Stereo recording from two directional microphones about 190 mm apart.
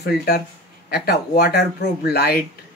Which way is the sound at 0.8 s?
55° left (ahead or behind).